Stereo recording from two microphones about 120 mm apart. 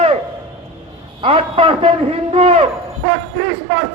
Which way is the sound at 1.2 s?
50° right (ahead or behind).